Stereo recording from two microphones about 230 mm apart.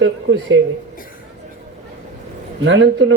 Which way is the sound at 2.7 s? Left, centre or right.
Right.